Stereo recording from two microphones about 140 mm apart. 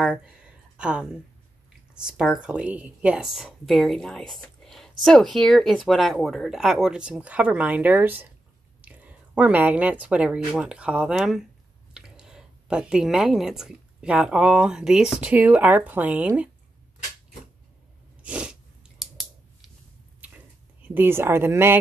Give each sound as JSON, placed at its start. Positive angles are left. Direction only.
{"t": 0.7, "sound": "a woman's voice", "side_deg": -5}
{"t": 2.0, "sound": "a woman's voice", "side_deg": -5}
{"t": 18.2, "sound": "sneeze", "side_deg": -10}
{"t": 20.2, "sound": "a sound", "side_deg": -10}